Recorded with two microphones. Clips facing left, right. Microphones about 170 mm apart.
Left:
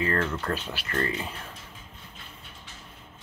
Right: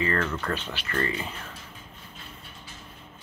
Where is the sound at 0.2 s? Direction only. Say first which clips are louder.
Even; 25° left (ahead or behind).